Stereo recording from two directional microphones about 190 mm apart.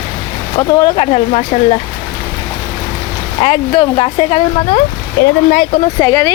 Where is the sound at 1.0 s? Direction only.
40° left (ahead or behind).